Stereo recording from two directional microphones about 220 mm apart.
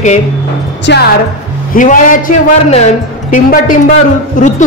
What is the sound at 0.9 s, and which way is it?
Speech, 50° left (ahead or behind).